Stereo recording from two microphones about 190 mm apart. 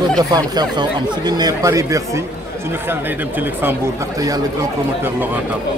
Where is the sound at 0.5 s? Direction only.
25° right (ahead or behind).